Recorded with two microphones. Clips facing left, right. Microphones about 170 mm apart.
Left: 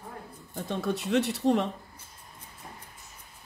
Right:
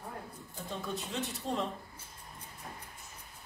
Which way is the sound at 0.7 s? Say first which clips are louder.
Left 10 dB; 75° left (ahead or behind).